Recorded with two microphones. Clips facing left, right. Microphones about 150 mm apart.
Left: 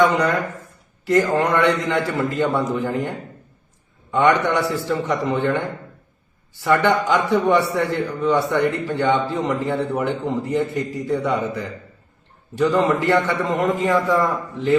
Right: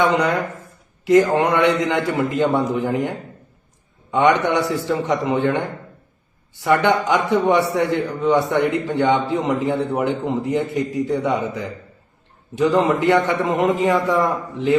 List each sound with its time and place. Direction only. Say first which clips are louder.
0.0 s a man's voice: even; 20° right (ahead or behind)